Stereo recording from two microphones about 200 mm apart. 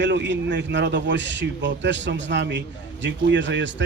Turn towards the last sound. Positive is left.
turn(degrees=-65)  # may be behind; listen again after turning